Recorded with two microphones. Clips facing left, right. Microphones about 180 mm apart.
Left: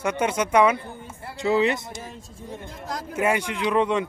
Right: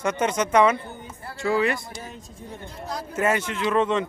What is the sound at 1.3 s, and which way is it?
Speech, 20° left (ahead or behind).